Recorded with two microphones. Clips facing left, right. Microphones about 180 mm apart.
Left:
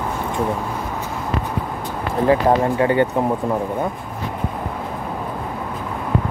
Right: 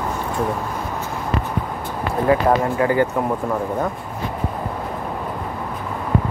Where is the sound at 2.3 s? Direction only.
25° left (ahead or behind).